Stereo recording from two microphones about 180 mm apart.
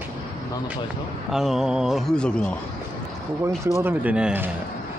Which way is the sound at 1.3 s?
Centre (ahead or behind).